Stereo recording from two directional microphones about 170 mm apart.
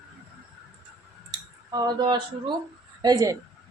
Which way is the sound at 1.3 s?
25° right (ahead or behind).